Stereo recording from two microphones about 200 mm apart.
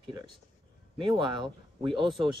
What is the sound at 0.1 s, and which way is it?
Speech, 20° right (ahead or behind).